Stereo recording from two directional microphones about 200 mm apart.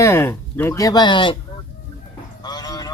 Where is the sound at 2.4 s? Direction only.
20° left (ahead or behind).